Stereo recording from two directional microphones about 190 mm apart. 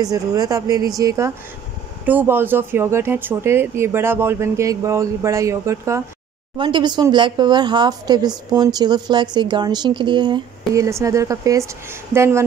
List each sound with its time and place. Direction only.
0.0 s speech: 20° right (ahead or behind)